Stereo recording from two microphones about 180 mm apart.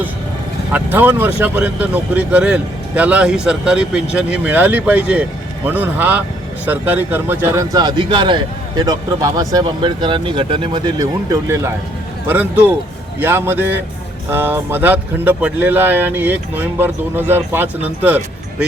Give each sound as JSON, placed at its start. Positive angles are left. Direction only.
{"t": 0.7, "sound": "speech", "side_deg": -10}